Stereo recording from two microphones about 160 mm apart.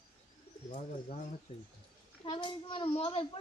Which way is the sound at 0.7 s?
40° left (ahead or behind).